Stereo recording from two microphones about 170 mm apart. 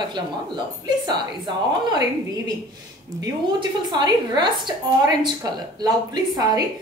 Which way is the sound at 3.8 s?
25° right (ahead or behind).